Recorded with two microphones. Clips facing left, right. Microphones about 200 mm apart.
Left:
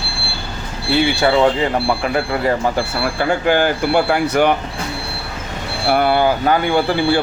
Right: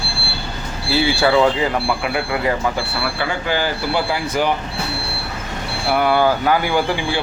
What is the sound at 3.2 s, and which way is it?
Speech, 50° left (ahead or behind).